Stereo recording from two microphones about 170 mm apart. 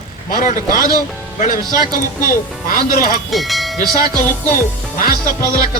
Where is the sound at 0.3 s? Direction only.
55° left (ahead or behind).